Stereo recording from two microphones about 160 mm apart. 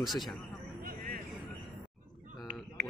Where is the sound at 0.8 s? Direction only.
70° right (ahead or behind).